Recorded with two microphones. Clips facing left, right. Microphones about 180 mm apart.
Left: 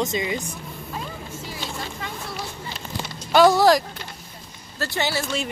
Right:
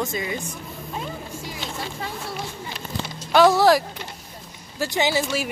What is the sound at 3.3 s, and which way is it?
Speech, centre (ahead or behind).